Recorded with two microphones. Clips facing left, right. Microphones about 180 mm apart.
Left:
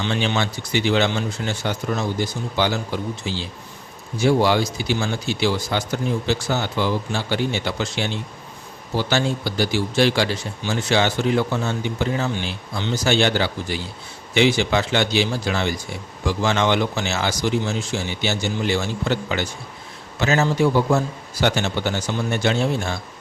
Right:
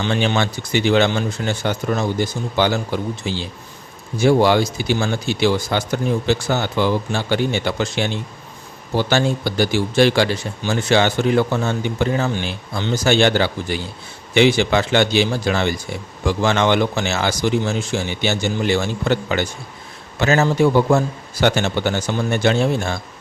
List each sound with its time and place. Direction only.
0.0 s speech: 50° right (ahead or behind)